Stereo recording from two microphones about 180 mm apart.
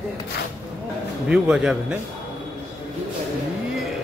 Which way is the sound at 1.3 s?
5° right (ahead or behind).